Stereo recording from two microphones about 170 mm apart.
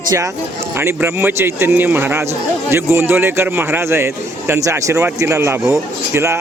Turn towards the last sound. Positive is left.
turn(degrees=-15)  # may be behind; listen again after turning